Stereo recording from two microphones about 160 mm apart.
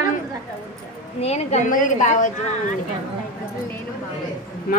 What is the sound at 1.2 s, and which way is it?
Speech, 40° left (ahead or behind).